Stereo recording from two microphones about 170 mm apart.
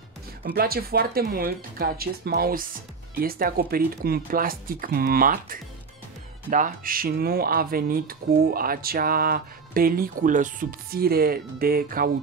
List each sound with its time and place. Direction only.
0.4 s speech: 65° right (ahead or behind)